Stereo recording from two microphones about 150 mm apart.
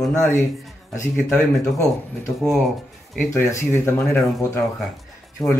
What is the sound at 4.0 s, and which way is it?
Speech, 5° left (ahead or behind).